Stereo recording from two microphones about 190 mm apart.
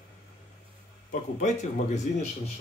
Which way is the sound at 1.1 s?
40° left (ahead or behind).